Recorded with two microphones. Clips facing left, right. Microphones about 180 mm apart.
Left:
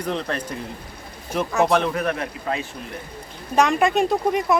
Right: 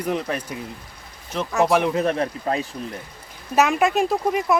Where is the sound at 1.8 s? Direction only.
25° right (ahead or behind).